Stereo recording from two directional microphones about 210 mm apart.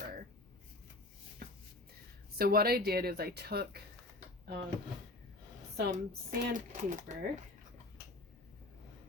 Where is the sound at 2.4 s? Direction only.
45° right (ahead or behind).